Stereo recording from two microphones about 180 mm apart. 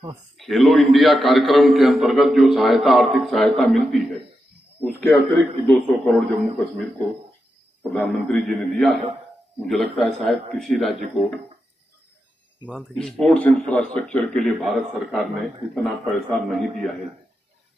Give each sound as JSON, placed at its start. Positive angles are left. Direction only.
{"t": 0.4, "sound": "a man's voice", "side_deg": 0}
{"t": 12.6, "sound": "a man's voice", "side_deg": 0}